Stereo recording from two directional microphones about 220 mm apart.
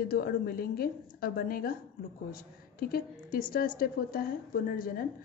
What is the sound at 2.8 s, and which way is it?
A woman's voice, 40° left (ahead or behind).